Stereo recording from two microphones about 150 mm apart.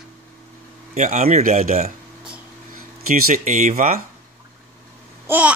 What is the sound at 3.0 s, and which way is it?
Speech, 70° right (ahead or behind).